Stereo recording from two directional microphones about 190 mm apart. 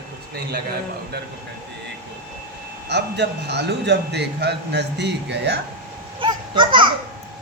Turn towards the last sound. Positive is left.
turn(degrees=-25)  # may be behind; listen again after turning